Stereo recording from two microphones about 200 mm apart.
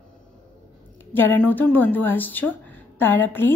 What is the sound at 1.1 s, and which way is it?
A woman's voice, 10° left (ahead or behind).